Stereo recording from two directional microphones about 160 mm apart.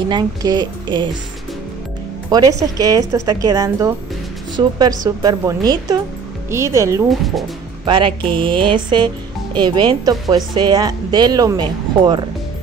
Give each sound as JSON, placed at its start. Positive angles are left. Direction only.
{"t": 0.1, "sound": "speech", "side_deg": -25}
{"t": 2.3, "sound": "speech", "side_deg": -25}
{"t": 7.1, "sound": "speech", "side_deg": 0}
{"t": 7.8, "sound": "speech", "side_deg": -30}